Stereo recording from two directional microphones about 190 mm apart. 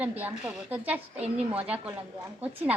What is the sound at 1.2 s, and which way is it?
Speech, 30° right (ahead or behind).